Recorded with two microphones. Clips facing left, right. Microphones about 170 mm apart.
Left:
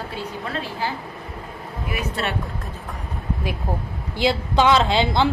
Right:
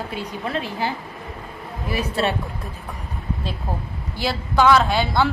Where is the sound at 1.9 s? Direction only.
30° right (ahead or behind).